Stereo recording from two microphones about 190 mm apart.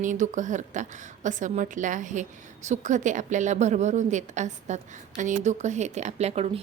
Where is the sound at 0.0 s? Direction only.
40° right (ahead or behind).